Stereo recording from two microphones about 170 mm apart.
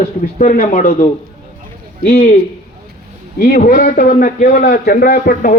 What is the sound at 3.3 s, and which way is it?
A man's voice, 60° left (ahead or behind).